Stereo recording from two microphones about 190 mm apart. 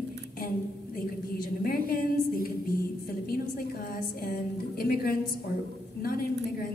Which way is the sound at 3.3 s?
50° left (ahead or behind).